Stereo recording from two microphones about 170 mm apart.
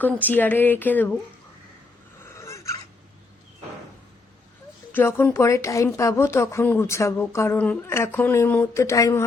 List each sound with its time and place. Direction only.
0.0 s a woman's voice: 10° left (ahead or behind)
2.2 s fowl: 15° left (ahead or behind)
4.9 s a woman's voice: 10° left (ahead or behind)